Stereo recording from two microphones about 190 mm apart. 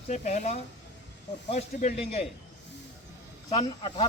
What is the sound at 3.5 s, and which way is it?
Speech, 25° left (ahead or behind).